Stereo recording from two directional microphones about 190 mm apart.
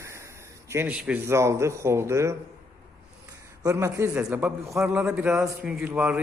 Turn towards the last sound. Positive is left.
turn(degrees=-5)  # may be behind; listen again after turning